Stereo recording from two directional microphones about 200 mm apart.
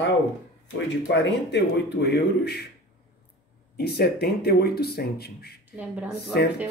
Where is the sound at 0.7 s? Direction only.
60° left (ahead or behind).